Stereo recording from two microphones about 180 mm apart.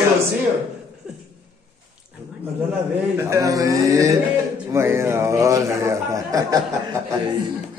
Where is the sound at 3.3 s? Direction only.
20° right (ahead or behind).